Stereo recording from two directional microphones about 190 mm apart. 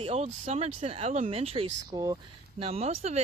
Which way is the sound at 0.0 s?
35° right (ahead or behind).